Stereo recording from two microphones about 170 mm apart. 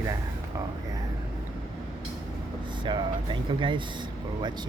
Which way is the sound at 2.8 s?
25° right (ahead or behind).